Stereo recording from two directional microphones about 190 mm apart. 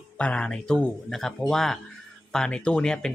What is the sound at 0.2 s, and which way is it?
Speech, 5° left (ahead or behind).